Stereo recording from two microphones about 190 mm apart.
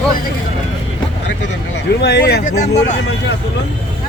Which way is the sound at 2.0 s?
60° left (ahead or behind).